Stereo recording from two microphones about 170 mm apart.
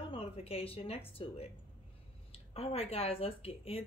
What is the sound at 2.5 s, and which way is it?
Speech, 35° left (ahead or behind).